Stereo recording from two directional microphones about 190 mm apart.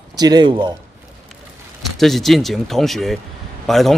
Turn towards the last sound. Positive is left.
turn(degrees=0)  # may be behind; listen again after turning